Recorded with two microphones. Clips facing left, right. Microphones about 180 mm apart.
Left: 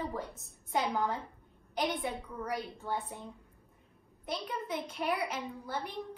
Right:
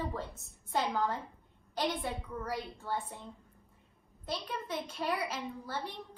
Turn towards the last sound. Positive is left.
turn(degrees=15)  # may be behind; listen again after turning